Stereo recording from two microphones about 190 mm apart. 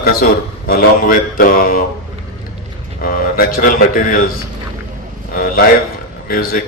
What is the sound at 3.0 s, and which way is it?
A man's voice, 45° left (ahead or behind).